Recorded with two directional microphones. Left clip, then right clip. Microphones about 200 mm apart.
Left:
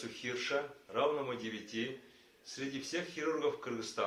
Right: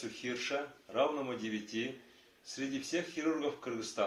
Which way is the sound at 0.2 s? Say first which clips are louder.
Left 1 dB; 35° right (ahead or behind).